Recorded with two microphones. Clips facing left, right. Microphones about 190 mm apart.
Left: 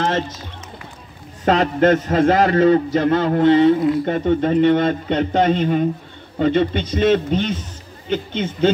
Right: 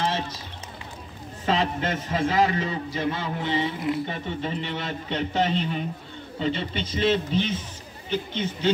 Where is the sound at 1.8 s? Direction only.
70° left (ahead or behind); by 7.4 s 55° left (ahead or behind).